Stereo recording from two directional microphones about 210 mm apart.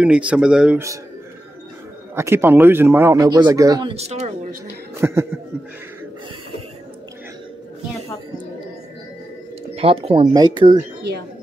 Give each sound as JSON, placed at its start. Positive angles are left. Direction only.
{"t": 0.0, "sound": "speech", "side_deg": -5}
{"t": 2.1, "sound": "a man's voice", "side_deg": -10}
{"t": 3.9, "sound": "speech", "side_deg": -30}
{"t": 5.0, "sound": "a man's voice", "side_deg": -10}
{"t": 9.8, "sound": "speech", "side_deg": -25}